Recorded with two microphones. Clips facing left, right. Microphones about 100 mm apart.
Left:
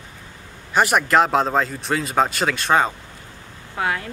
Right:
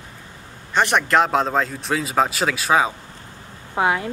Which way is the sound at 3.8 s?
20° right (ahead or behind).